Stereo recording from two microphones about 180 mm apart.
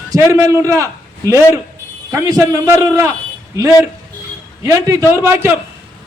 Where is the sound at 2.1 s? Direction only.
20° right (ahead or behind).